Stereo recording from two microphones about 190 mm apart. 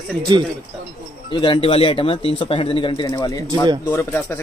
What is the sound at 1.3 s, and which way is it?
A man's voice, 25° left (ahead or behind).